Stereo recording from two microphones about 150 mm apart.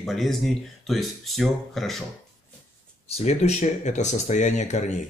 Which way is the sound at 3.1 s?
45° left (ahead or behind).